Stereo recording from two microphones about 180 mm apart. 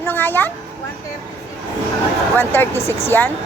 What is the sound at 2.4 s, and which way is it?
Speech, 10° left (ahead or behind).